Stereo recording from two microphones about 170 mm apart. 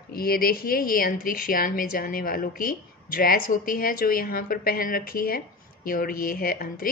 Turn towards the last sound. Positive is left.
turn(degrees=55)  # may be behind; listen again after turning